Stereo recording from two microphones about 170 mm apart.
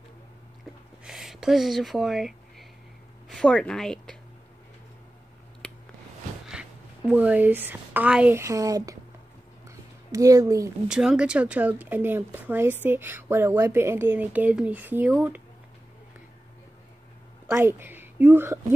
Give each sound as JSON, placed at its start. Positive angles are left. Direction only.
{"t": 1.0, "sound": "speech", "side_deg": 0}
{"t": 5.6, "sound": "a sound", "side_deg": 5}
{"t": 6.5, "sound": "a woman's voice", "side_deg": -5}
{"t": 9.7, "sound": "a sound", "side_deg": -20}
{"t": 10.9, "sound": "speech", "side_deg": -5}
{"t": 17.5, "sound": "a woman's voice", "side_deg": -15}